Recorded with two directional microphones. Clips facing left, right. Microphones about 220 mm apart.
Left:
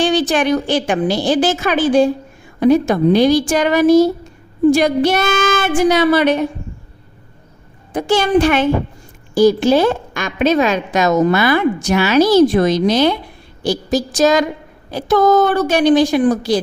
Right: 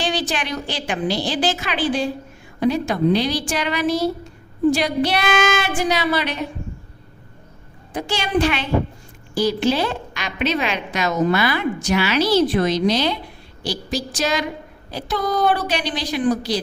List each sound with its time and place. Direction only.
0.0 s a woman's voice: 50° left (ahead or behind)
7.9 s a woman's voice: 50° left (ahead or behind)